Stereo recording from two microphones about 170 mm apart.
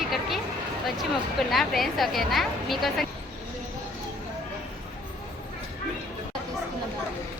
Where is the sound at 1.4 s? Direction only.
Centre (ahead or behind).